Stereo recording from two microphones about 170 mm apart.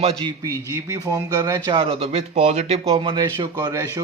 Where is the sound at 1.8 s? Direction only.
35° right (ahead or behind).